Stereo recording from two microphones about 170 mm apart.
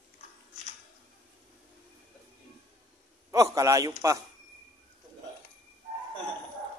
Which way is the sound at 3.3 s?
20° right (ahead or behind).